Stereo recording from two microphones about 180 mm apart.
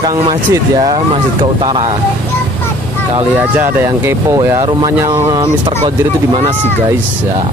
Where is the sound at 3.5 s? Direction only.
10° right (ahead or behind).